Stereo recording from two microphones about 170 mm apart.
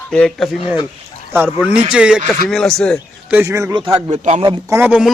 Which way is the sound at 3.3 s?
15° right (ahead or behind).